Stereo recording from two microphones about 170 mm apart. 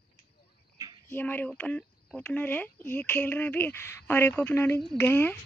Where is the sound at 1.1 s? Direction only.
10° left (ahead or behind).